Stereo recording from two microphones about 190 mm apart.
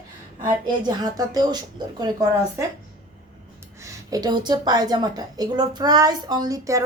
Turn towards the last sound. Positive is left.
turn(degrees=-15)  # may be behind; listen again after turning